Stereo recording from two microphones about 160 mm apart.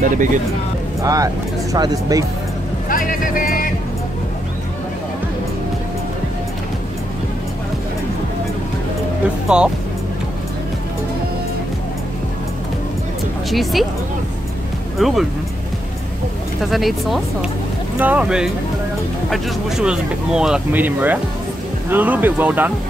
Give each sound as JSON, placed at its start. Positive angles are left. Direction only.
{"t": 0.0, "sound": "speech", "side_deg": -55}
{"t": 1.0, "sound": "speech", "side_deg": -20}
{"t": 2.9, "sound": "music", "side_deg": 60}
{"t": 9.5, "sound": "speech", "side_deg": -5}
{"t": 13.5, "sound": "speech", "side_deg": 0}
{"t": 15.0, "sound": "speech", "side_deg": 0}
{"t": 16.6, "sound": "speech", "side_deg": 0}